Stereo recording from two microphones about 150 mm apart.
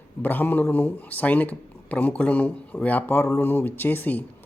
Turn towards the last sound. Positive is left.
turn(degrees=10)  # may be behind; listen again after turning